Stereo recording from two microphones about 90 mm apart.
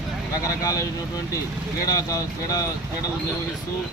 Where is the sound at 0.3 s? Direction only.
40° left (ahead or behind).